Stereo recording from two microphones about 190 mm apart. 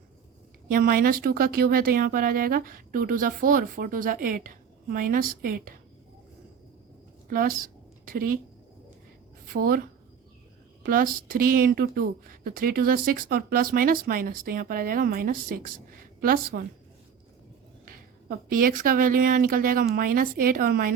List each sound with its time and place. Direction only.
0.7 s speech: 50° right (ahead or behind)
7.3 s a woman's voice: 45° right (ahead or behind)
9.5 s speech: 50° right (ahead or behind)
10.8 s speech: 50° right (ahead or behind)
17.8 s a sound: 50° right (ahead or behind)
18.8 s speech: 45° right (ahead or behind)